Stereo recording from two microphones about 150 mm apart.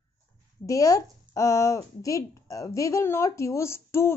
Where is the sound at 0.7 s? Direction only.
20° left (ahead or behind).